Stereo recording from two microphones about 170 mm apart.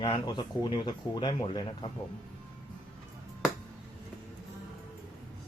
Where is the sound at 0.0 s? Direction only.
25° left (ahead or behind).